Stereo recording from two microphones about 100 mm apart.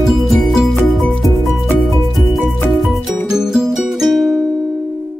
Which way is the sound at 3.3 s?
5° right (ahead or behind).